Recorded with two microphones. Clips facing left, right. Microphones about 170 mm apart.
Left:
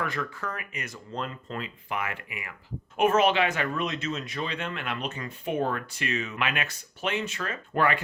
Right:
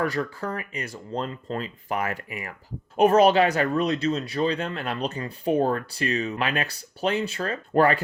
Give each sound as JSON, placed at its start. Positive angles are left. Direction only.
{"t": 0.0, "sound": "speech", "side_deg": -35}